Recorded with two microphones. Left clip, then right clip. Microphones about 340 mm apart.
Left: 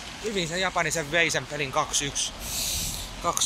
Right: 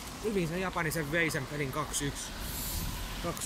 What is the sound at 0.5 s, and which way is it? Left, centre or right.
A man's voice, centre.